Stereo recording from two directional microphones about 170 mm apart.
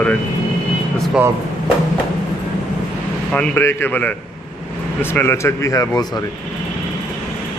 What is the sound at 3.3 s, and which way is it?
A man's voice, 10° left (ahead or behind).